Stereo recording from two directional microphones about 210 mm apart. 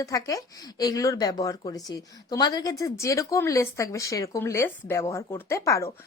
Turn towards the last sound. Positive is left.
turn(degrees=15)  # may be behind; listen again after turning